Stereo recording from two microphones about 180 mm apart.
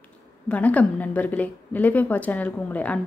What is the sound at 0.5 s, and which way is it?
A woman's voice, 10° left (ahead or behind).